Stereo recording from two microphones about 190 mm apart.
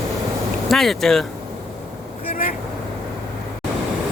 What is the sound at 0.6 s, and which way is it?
Speech, centre (ahead or behind).